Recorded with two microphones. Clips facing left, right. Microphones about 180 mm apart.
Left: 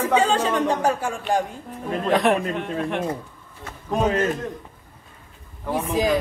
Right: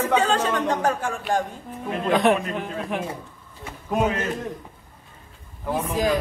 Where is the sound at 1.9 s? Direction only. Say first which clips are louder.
Even; centre (ahead or behind).